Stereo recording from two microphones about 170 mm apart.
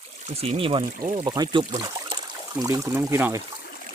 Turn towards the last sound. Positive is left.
turn(degrees=-15)  # may be behind; listen again after turning